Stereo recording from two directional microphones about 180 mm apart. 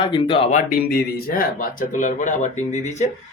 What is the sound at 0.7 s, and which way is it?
A man's voice, 55° left (ahead or behind).